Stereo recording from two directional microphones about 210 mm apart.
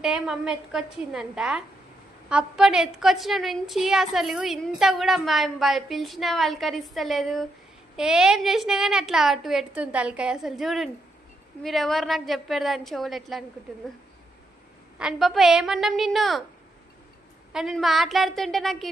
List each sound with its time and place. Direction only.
0.0 s a woman's voice: 5° right (ahead or behind)
15.0 s a woman's voice: centre (ahead or behind)
17.5 s a woman's voice: centre (ahead or behind)